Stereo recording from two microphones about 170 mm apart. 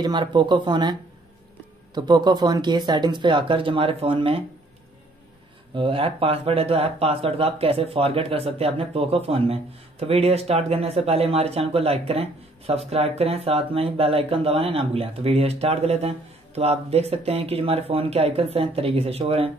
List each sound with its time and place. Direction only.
0.0 s speech: 25° right (ahead or behind)
2.0 s speech: 25° right (ahead or behind)
5.8 s speech: 30° right (ahead or behind)